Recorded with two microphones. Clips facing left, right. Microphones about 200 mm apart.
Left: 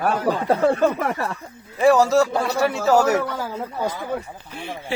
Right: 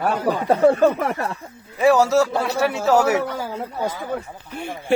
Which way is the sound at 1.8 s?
Centre (ahead or behind).